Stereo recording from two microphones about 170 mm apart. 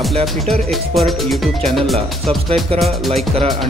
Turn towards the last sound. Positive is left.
turn(degrees=0)  # may be behind; listen again after turning